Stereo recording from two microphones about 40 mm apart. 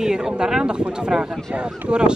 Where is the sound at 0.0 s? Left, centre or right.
Centre.